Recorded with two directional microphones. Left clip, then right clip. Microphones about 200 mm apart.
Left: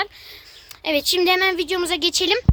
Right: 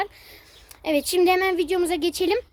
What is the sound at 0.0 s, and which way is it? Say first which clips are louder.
A woman's voice: left 2 dB; centre (ahead or behind).